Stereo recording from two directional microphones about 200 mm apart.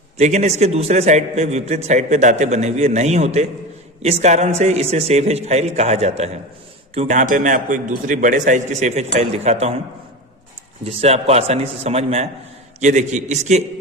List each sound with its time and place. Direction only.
0.2 s a man's voice: 35° right (ahead or behind)
10.8 s a man's voice: 30° right (ahead or behind)